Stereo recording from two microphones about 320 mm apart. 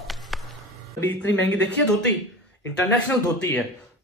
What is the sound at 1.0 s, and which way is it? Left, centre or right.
Speech, centre.